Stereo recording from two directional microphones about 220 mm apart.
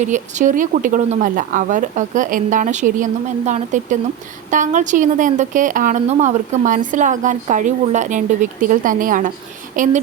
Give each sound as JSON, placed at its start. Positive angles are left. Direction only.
{"t": 0.0, "sound": "a woman's voice", "side_deg": -35}